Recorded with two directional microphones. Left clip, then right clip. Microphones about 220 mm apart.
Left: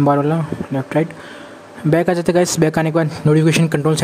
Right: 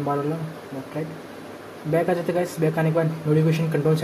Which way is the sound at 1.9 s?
50° left (ahead or behind).